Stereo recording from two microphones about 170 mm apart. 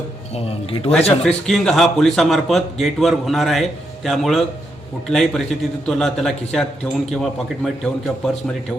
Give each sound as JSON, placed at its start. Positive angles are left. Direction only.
{"t": 0.3, "sound": "speech", "side_deg": 35}
{"t": 1.2, "sound": "a man's voice", "side_deg": 5}